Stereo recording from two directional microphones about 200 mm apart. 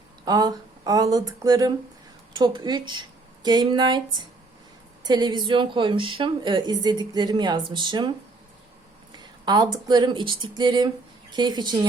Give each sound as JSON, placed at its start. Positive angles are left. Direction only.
{"t": 0.3, "sound": "a woman's voice", "side_deg": -20}
{"t": 5.0, "sound": "a woman's voice", "side_deg": -20}
{"t": 9.1, "sound": "a sound", "side_deg": -20}
{"t": 9.7, "sound": "a woman's voice", "side_deg": -20}